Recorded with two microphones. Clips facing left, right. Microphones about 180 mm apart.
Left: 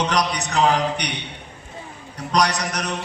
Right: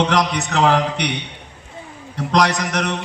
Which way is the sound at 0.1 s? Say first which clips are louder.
Right 3 dB; 80° right.